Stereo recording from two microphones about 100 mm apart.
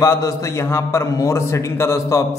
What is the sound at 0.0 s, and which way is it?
A man's voice, 30° left (ahead or behind).